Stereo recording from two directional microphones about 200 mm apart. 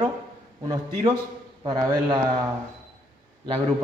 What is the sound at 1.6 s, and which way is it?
Speech, 20° right (ahead or behind).